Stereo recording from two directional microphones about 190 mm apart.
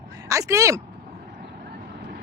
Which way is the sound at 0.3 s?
15° right (ahead or behind).